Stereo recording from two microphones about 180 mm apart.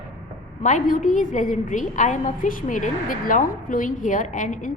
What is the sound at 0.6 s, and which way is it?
A woman's voice, 45° left (ahead or behind).